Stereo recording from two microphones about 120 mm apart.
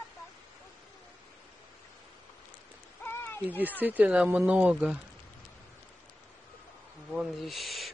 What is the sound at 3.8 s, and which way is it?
Speech, 15° right (ahead or behind).